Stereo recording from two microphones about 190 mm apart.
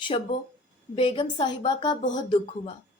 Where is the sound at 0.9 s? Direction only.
25° left (ahead or behind).